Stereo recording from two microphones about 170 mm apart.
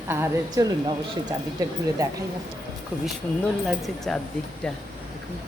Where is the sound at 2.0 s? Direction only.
20° right (ahead or behind).